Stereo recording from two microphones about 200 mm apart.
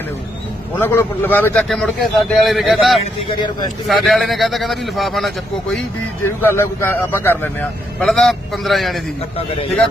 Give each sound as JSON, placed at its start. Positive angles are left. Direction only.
{"t": 0.8, "sound": "a man's voice", "side_deg": 10}
{"t": 3.0, "sound": "speech", "side_deg": 20}
{"t": 3.8, "sound": "a man's voice", "side_deg": 0}
{"t": 6.2, "sound": "a man's voice", "side_deg": 10}